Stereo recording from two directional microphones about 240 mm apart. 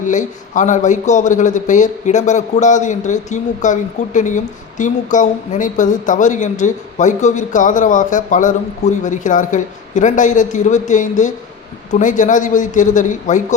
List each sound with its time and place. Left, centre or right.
0.0 s a man's voice: left